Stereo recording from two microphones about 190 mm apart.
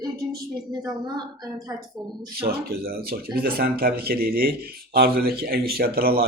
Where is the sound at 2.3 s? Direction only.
55° right (ahead or behind).